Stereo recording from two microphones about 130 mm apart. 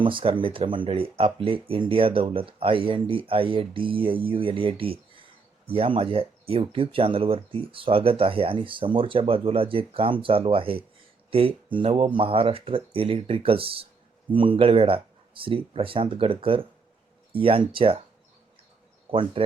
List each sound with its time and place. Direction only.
0.0 s speech: 40° right (ahead or behind)
19.1 s speech: 45° right (ahead or behind)